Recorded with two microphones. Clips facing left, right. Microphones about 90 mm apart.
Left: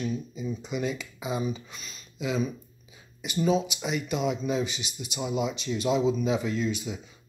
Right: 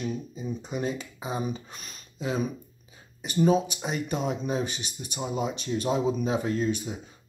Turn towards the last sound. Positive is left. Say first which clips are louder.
# right 2 dB
turn(degrees=-40)  # may be behind; listen again after turning